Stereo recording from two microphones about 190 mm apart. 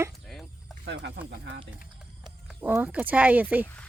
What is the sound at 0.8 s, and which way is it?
Speech, 65° right (ahead or behind).